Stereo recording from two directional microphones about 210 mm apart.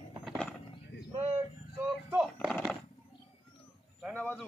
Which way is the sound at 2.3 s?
Centre (ahead or behind).